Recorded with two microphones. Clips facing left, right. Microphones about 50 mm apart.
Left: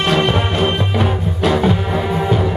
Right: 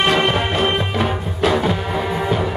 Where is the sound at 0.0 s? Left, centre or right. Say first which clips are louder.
Even; centre.